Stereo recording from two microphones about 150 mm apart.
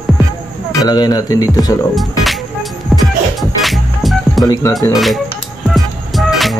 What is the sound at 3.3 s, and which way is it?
Music, centre (ahead or behind).